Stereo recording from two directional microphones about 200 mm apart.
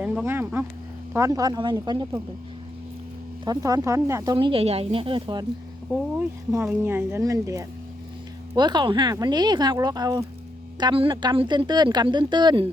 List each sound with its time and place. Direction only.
0.0 s speech: 10° right (ahead or behind)
3.4 s speech: 20° right (ahead or behind)
5.9 s speech: 10° right (ahead or behind)